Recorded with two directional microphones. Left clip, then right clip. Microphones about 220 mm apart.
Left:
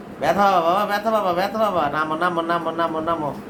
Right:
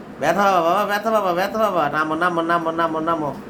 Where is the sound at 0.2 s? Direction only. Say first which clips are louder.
Even; 20° right (ahead or behind).